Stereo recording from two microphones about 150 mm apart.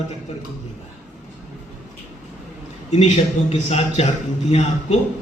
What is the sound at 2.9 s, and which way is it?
A man's voice, 50° left (ahead or behind).